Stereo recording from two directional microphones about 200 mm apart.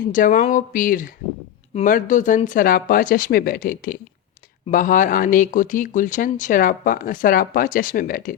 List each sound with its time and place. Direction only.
0.1 s speech: 40° left (ahead or behind)